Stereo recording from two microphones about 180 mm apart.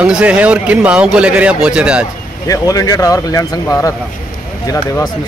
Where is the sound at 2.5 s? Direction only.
20° left (ahead or behind).